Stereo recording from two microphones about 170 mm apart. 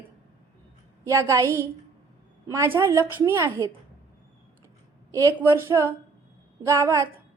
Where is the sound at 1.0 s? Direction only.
15° right (ahead or behind).